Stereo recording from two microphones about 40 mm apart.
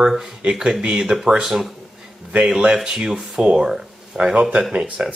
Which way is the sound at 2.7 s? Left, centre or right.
Centre.